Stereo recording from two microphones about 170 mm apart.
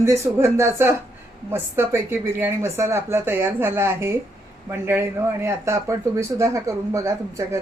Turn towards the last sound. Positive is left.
turn(degrees=-15)  # may be behind; listen again after turning